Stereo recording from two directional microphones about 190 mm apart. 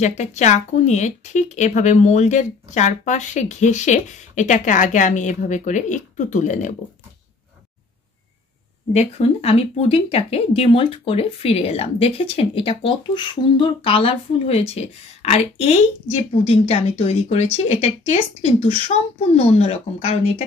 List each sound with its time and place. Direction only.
0.0 s speech: 35° left (ahead or behind)
8.9 s speech: 30° left (ahead or behind)